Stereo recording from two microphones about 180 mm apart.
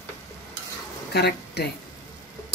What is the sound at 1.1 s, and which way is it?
Speech, 65° left (ahead or behind).